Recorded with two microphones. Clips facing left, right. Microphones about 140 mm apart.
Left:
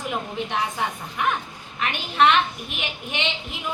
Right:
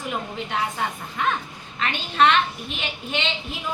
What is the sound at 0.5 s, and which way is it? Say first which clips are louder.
A woman's voice: right 1 dB; 15° left (ahead or behind).